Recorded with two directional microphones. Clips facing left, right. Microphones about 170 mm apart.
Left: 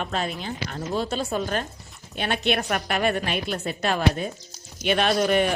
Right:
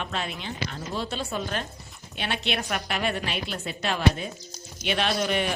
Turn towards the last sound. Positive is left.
turn(degrees=45)  # may be behind; listen again after turning